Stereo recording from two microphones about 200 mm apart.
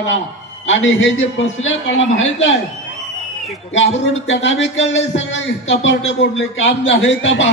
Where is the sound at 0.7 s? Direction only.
70° left (ahead or behind).